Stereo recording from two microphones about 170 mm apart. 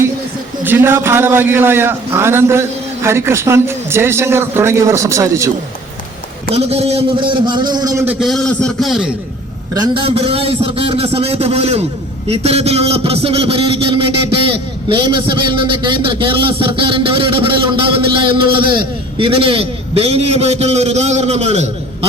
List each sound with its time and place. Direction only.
0.6 s a man's voice: 15° right (ahead or behind)
6.5 s a man's voice: 35° right (ahead or behind); by 8.0 s 20° right (ahead or behind)
8.0 s a man's voice: centre (ahead or behind)
9.7 s a man's voice: 25° right (ahead or behind)